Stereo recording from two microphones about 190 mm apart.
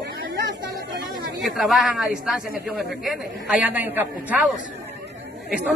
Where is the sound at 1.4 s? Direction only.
Centre (ahead or behind).